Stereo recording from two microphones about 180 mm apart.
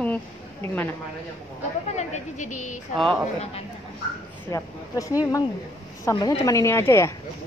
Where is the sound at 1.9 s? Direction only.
40° left (ahead or behind).